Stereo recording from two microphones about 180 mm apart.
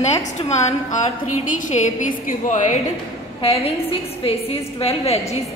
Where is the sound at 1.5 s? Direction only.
45° left (ahead or behind).